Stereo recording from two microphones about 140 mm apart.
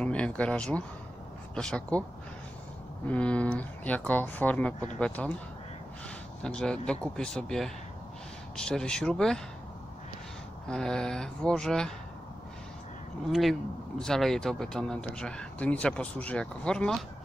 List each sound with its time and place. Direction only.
0.0 s speech: 10° left (ahead or behind)
3.1 s speech: 10° left (ahead or behind)
10.7 s speech: 5° left (ahead or behind)
13.3 s speech: centre (ahead or behind)